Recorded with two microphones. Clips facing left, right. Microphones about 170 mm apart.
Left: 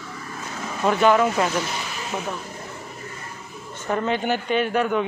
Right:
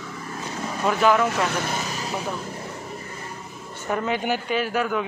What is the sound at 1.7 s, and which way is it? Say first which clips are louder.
Vehicle: right 3 dB; 40° right (ahead or behind).